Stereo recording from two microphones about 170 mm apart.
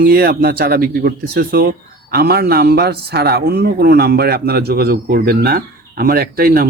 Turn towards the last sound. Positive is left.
turn(degrees=-60)  # may be behind; listen again after turning